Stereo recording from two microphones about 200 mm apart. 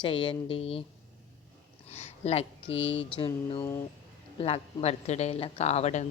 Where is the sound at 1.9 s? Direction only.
30° left (ahead or behind).